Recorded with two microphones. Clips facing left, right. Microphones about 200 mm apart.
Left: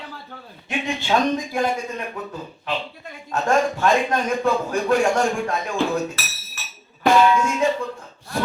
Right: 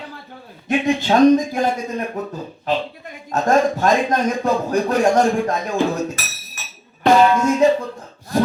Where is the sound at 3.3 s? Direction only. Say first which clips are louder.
Right 4 dB; 40° right (ahead or behind).